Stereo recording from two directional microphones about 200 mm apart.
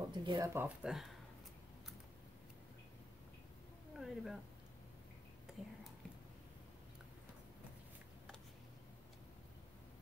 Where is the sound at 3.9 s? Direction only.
Centre (ahead or behind).